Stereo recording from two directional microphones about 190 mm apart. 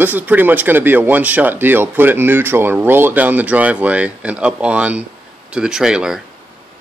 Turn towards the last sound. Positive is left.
turn(degrees=-5)  # may be behind; listen again after turning